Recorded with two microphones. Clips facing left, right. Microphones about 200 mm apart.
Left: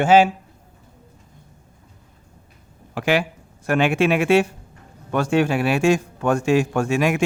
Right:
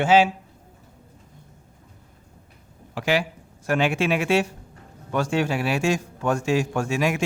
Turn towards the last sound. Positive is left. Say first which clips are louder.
# left 4 dB
turn(degrees=60)  # may be behind; listen again after turning